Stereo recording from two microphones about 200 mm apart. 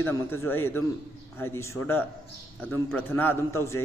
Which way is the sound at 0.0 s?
10° left (ahead or behind).